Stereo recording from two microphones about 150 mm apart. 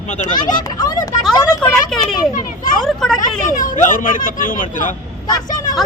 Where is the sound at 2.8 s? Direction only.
5° left (ahead or behind).